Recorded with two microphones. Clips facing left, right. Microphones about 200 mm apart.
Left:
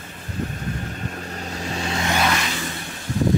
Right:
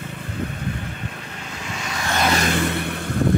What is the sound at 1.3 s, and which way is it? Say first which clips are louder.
Vehicle: left 4 dB; 40° left (ahead or behind).